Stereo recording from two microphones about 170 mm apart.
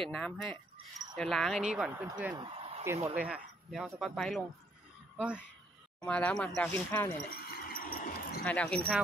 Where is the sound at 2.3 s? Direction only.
35° right (ahead or behind).